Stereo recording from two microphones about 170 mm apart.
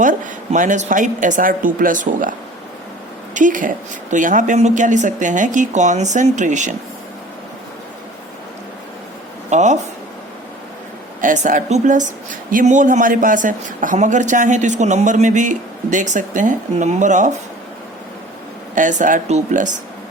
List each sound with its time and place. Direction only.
0.0 s speech: 50° right (ahead or behind)
3.3 s speech: 50° right (ahead or behind)
9.5 s speech: 45° right (ahead or behind)
11.2 s speech: 50° right (ahead or behind)
18.7 s speech: 50° right (ahead or behind)